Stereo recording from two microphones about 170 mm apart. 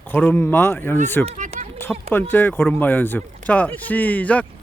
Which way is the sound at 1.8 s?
10° left (ahead or behind).